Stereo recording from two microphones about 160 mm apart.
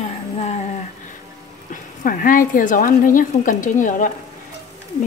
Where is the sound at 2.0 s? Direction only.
60° left (ahead or behind).